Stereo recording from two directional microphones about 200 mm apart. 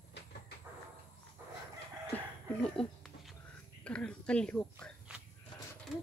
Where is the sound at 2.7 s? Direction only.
Centre (ahead or behind).